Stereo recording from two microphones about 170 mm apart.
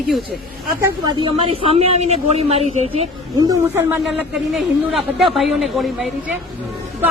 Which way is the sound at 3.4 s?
20° right (ahead or behind).